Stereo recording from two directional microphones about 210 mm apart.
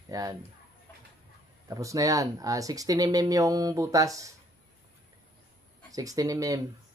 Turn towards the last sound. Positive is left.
turn(degrees=-15)  # may be behind; listen again after turning